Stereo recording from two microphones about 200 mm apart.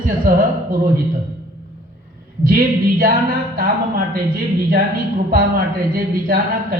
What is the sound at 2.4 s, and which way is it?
A woman's voice, 45° right (ahead or behind).